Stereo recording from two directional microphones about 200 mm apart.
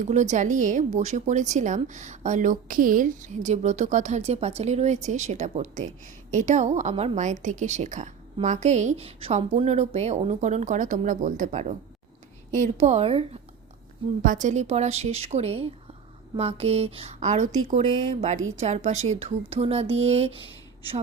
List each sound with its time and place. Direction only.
0.0 s a woman's voice: 35° right (ahead or behind)